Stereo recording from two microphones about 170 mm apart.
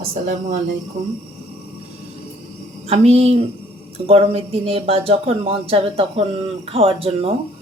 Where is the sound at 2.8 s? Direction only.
40° right (ahead or behind).